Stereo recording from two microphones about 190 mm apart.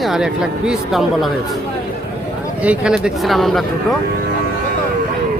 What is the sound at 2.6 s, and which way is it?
Speech, 5° right (ahead or behind).